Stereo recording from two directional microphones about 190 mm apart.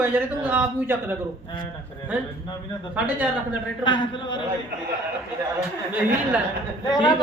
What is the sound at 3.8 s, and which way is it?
Speech, 25° left (ahead or behind).